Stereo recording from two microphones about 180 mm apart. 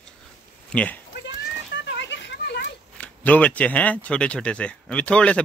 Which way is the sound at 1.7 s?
80° left.